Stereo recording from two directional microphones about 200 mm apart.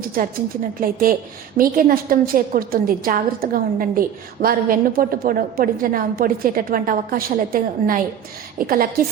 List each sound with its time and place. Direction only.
0.0 s a woman's voice: 45° right (ahead or behind)